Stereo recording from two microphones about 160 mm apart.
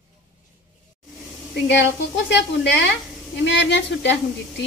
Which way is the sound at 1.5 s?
90° left.